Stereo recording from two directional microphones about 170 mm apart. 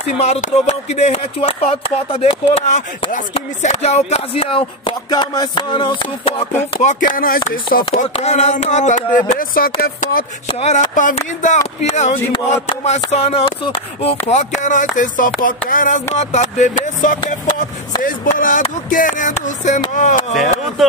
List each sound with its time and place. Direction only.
0.2 s a sound: 40° left (ahead or behind)
7.2 s speech: 60° left (ahead or behind)
7.8 s speech: 35° left (ahead or behind); by 10.2 s 60° left (ahead or behind)
10.5 s speech: 40° left (ahead or behind)
13.1 s a sound: 35° left (ahead or behind)
14.2 s speech: 40° left (ahead or behind)